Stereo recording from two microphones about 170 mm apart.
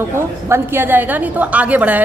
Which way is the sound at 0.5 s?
10° right (ahead or behind).